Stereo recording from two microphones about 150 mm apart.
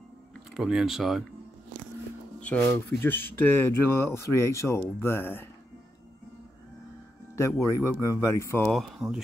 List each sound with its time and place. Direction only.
0.6 s speech: 5° right (ahead or behind)
3.0 s speech: 15° left (ahead or behind)
7.3 s speech: 20° left (ahead or behind)
8.6 s speech: centre (ahead or behind)